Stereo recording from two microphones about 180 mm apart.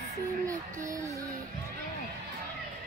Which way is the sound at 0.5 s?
20° right (ahead or behind).